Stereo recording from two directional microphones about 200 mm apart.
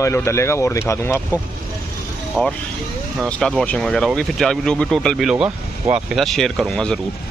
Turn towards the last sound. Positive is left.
turn(degrees=0)  # may be behind; listen again after turning